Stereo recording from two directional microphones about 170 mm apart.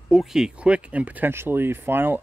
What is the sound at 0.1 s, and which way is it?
Speech, centre (ahead or behind).